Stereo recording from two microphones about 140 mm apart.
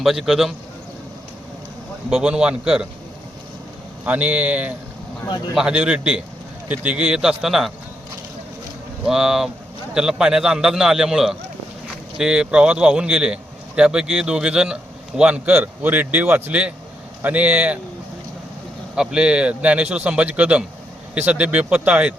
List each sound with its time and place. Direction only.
0.0 s a man's voice: centre (ahead or behind)
2.0 s a man's voice: 5° right (ahead or behind)
4.0 s a man's voice: 10° right (ahead or behind)
9.0 s a man's voice: 5° right (ahead or behind)
18.9 s speech: 5° right (ahead or behind)